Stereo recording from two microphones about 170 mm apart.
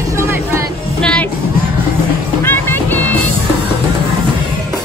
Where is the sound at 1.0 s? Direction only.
5° left (ahead or behind).